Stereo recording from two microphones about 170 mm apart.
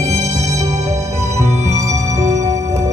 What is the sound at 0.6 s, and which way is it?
Music, 15° right (ahead or behind).